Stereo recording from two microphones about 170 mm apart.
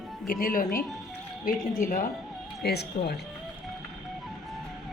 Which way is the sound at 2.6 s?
70° left (ahead or behind).